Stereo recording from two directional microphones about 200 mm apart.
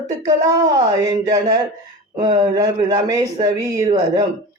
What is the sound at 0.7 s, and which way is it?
Speech, 20° right (ahead or behind).